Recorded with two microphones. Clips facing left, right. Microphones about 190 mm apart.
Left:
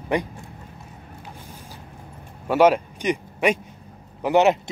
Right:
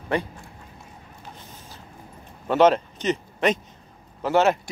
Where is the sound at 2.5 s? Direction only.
10° left (ahead or behind).